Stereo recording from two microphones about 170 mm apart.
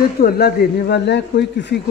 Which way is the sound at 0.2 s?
65° left (ahead or behind).